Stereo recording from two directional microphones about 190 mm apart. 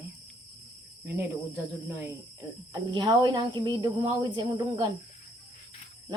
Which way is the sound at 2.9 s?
20° right (ahead or behind).